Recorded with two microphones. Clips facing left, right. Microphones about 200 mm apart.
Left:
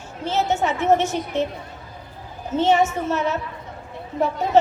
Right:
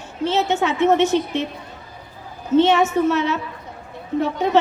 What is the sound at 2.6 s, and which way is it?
A woman's voice, 65° right (ahead or behind).